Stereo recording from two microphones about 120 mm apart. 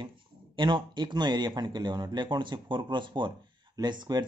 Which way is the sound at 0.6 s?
40° right (ahead or behind).